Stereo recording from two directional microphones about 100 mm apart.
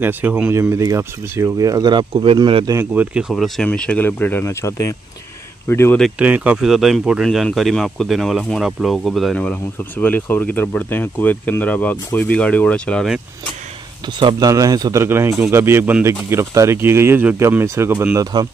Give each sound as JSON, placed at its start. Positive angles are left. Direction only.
{"t": 0.0, "sound": "speech", "side_deg": -20}
{"t": 1.9, "sound": "speech", "side_deg": -55}
{"t": 2.8, "sound": "speech", "side_deg": -15}
{"t": 3.6, "sound": "speech", "side_deg": 10}
{"t": 6.1, "sound": "speech", "side_deg": -15}
{"t": 9.5, "sound": "speech", "side_deg": 20}
{"t": 14.0, "sound": "a man's voice", "side_deg": -45}
{"t": 15.0, "sound": "speech", "side_deg": -25}
{"t": 18.1, "sound": "a man's voice", "side_deg": -40}